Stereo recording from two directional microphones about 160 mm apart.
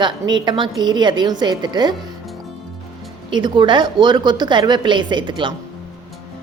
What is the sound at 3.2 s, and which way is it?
A woman's voice, 30° right (ahead or behind).